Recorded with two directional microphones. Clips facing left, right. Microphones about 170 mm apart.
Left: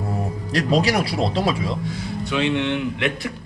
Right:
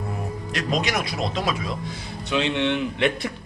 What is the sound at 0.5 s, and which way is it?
Speech, 35° left (ahead or behind).